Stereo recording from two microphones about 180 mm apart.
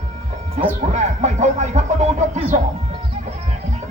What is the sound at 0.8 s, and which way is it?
Speech, 40° right (ahead or behind).